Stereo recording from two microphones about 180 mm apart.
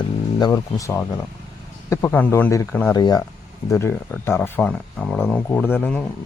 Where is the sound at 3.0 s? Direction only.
25° left (ahead or behind).